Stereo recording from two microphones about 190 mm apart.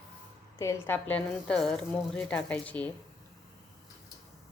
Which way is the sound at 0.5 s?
15° left (ahead or behind).